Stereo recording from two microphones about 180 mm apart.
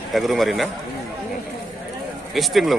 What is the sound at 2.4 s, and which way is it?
Speech, centre (ahead or behind).